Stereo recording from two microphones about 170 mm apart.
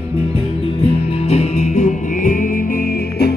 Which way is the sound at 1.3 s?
40° left (ahead or behind).